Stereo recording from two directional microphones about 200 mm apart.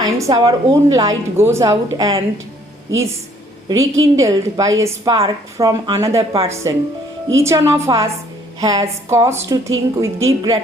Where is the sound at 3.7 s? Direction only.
80° right.